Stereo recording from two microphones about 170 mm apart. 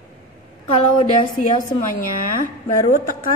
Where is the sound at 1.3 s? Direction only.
50° left (ahead or behind).